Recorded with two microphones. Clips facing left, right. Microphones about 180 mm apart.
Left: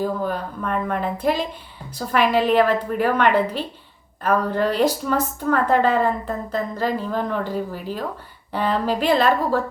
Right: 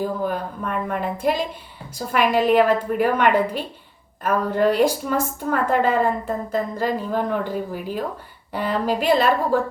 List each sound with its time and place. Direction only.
0.0 s a woman's voice: 10° right (ahead or behind)